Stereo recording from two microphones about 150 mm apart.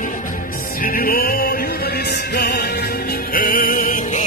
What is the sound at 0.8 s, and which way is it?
Music, 70° left (ahead or behind).